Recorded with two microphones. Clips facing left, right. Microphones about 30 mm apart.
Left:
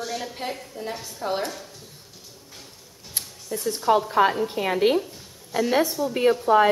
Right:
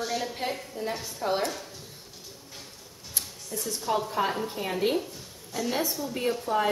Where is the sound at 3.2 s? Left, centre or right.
Left.